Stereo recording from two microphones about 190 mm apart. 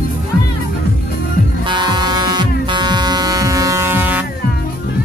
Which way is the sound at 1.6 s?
20° right (ahead or behind).